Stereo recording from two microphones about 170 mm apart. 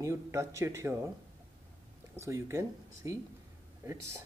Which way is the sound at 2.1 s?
15° right (ahead or behind).